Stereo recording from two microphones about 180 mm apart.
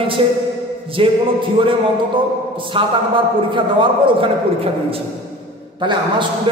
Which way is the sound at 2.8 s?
30° right (ahead or behind).